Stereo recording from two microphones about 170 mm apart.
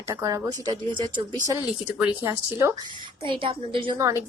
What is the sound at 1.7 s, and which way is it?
A woman's voice, 10° right (ahead or behind).